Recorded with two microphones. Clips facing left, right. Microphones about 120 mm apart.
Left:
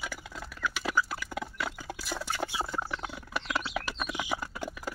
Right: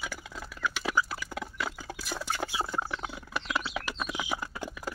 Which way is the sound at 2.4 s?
5° right (ahead or behind).